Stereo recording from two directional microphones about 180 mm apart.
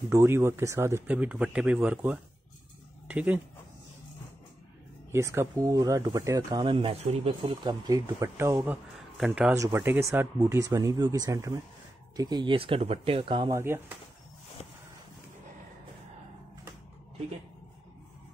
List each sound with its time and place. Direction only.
0.1 s speech: 15° right (ahead or behind)
5.1 s speech: 15° right (ahead or behind); by 7.5 s 35° right (ahead or behind)
7.6 s speech: 20° right (ahead or behind)
8.9 s speech: centre (ahead or behind); by 13.5 s 30° right (ahead or behind)
13.5 s speech: 15° right (ahead or behind)